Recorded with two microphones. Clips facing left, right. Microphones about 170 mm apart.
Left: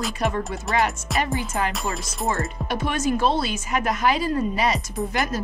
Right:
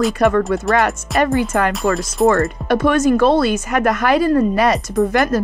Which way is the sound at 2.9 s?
50° right (ahead or behind).